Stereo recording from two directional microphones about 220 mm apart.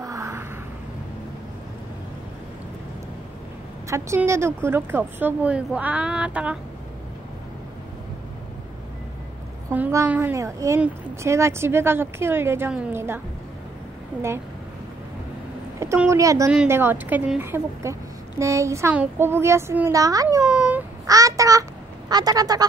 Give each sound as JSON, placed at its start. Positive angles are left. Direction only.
{"t": 0.0, "sound": "a sound", "side_deg": -15}
{"t": 3.9, "sound": "a woman's voice", "side_deg": -10}
{"t": 9.7, "sound": "a woman's voice", "side_deg": -10}
{"t": 15.8, "sound": "a woman's voice", "side_deg": -10}
{"t": 20.4, "sound": "child singing", "side_deg": -10}
{"t": 22.1, "sound": "a woman's voice", "side_deg": -15}